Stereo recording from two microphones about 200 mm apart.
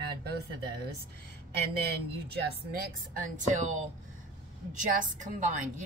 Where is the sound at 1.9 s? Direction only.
55° right (ahead or behind).